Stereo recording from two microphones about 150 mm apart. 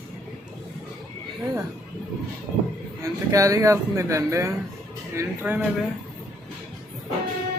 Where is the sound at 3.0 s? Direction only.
20° right (ahead or behind).